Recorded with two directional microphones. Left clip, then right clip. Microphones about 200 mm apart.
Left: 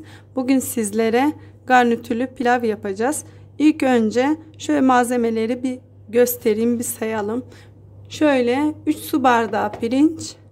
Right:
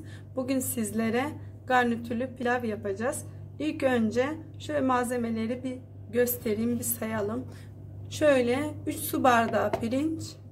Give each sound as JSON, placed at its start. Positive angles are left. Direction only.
{"t": 0.0, "sound": "a woman's voice", "side_deg": 40}